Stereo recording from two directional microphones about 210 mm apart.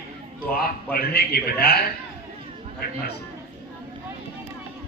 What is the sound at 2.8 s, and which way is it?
Speech, 45° left (ahead or behind).